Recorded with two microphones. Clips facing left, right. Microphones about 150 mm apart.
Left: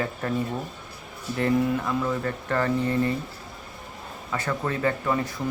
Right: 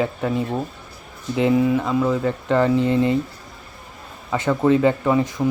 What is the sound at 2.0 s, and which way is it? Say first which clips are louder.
Speech: right 7 dB; 20° right (ahead or behind).